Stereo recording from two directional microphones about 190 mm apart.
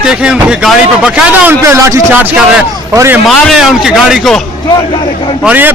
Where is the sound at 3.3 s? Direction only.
Centre (ahead or behind).